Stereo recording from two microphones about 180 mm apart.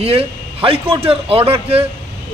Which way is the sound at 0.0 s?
35° right (ahead or behind).